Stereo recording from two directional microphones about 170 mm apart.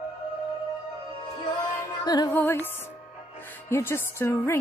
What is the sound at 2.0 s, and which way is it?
Music, 25° left (ahead or behind).